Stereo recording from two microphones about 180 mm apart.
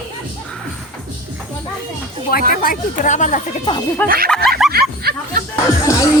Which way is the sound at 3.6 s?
25° left (ahead or behind).